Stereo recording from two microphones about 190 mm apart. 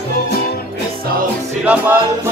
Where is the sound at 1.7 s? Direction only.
5° right (ahead or behind).